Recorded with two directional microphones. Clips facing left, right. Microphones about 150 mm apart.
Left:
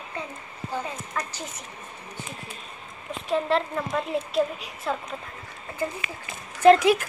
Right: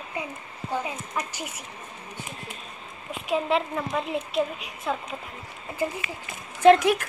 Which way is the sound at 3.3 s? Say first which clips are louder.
Left 1 dB; 5° right (ahead or behind).